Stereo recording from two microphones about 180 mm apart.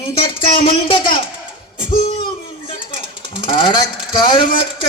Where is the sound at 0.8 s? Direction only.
25° left (ahead or behind).